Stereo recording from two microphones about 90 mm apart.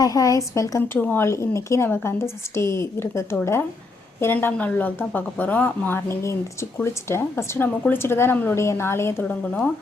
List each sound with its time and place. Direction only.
0.0 s a woman's voice: 40° left (ahead or behind)
0.8 s speech: 20° left (ahead or behind)
1.2 s a woman's voice: 35° left (ahead or behind)